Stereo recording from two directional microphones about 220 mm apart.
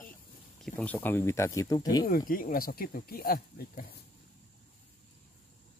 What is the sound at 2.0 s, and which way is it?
Speech, 40° left (ahead or behind).